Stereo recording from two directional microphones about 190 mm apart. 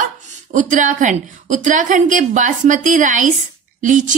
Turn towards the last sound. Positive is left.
turn(degrees=-40)  # may be behind; listen again after turning